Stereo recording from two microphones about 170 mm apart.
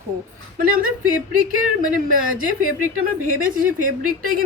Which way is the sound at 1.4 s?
55° right (ahead or behind).